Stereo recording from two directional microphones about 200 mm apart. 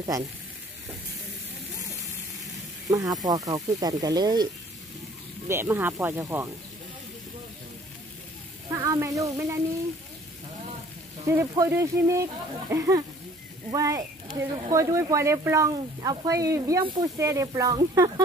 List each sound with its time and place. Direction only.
2.9 s speech: 20° right (ahead or behind)
5.5 s speech: 10° right (ahead or behind)
8.6 s speech: 15° right (ahead or behind)
11.2 s speech: 15° right (ahead or behind)